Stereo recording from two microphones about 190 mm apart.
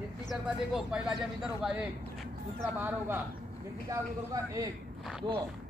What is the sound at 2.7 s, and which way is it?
Speech, 10° right (ahead or behind).